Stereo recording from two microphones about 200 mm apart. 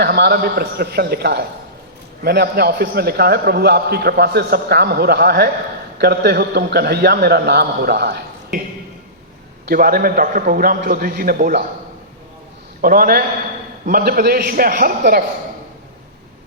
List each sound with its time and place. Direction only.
0.0 s a man's voice: 55° right (ahead or behind)
9.6 s a man's voice: 45° right (ahead or behind)
12.8 s a man's voice: 45° right (ahead or behind)